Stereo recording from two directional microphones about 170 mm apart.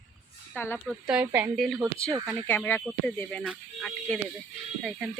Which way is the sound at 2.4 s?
15° left (ahead or behind).